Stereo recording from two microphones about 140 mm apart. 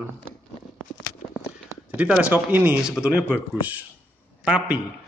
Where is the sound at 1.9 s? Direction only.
10° right (ahead or behind).